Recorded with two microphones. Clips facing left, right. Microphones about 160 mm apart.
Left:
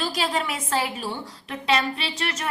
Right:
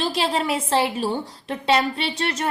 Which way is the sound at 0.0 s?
30° right (ahead or behind).